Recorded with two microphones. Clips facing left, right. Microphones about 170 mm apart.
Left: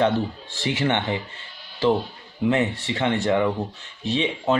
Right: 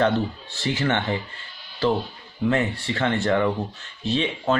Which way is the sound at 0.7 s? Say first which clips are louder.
Even; 20° left (ahead or behind).